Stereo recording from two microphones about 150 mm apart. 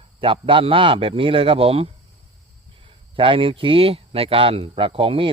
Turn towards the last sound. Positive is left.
turn(degrees=-35)  # may be behind; listen again after turning